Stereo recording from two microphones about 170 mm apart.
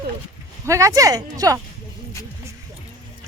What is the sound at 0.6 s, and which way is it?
Speech, 15° right (ahead or behind).